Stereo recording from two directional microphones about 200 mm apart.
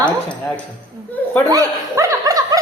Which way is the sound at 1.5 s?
15° right (ahead or behind).